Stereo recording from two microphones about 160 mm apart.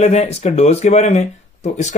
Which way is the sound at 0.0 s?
40° left (ahead or behind).